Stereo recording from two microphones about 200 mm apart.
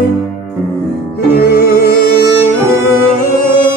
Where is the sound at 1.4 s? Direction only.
50° left (ahead or behind).